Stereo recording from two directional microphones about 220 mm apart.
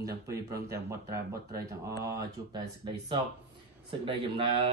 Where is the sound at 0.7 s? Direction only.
15° right (ahead or behind).